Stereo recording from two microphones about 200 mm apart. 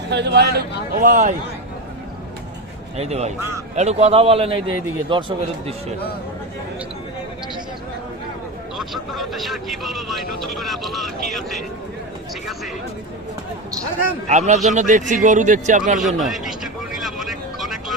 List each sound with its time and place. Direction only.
0.1 s a man's voice: 60° right (ahead or behind)
1.0 s a man's voice: 40° right (ahead or behind)
3.0 s a man's voice: 30° right (ahead or behind)
8.8 s speech: centre (ahead or behind)
14.3 s a man's voice: 35° right (ahead or behind)
16.0 s speech: centre (ahead or behind)
17.0 s vehicle: centre (ahead or behind)